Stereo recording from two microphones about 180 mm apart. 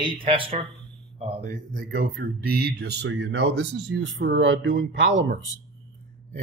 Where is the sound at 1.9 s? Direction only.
55° right (ahead or behind); by 5.3 s 90° right.